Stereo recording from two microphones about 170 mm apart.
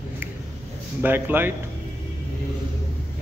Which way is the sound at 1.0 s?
10° right (ahead or behind).